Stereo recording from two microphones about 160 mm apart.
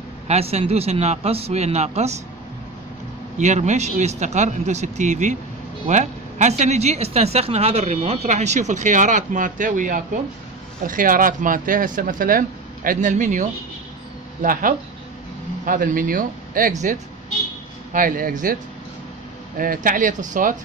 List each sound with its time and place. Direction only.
0.3 s a man's voice: 40° right (ahead or behind)
3.3 s speech: 50° right (ahead or behind)
17.9 s speech: 60° right (ahead or behind)